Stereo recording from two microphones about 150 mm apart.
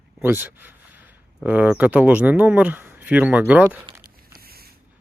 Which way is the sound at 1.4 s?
10° right (ahead or behind).